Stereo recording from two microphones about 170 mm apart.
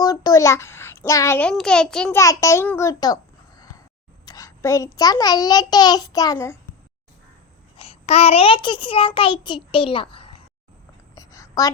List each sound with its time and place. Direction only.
0.0 s a child's voice: 20° left (ahead or behind)
1.4 s a child's voice: 5° left (ahead or behind)
2.1 s a child's voice: 20° left (ahead or behind)
4.3 s a child's voice: 20° left (ahead or behind)
7.8 s a child's voice: 40° left (ahead or behind)
11.1 s a sound: 20° left (ahead or behind)